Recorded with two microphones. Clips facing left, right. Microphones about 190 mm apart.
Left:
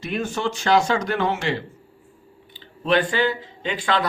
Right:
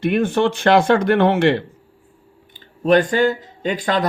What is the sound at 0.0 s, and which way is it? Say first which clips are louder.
Speech: right 8 dB; 55° right (ahead or behind).